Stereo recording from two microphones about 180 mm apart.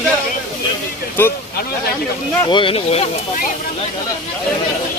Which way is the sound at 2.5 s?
30° left (ahead or behind).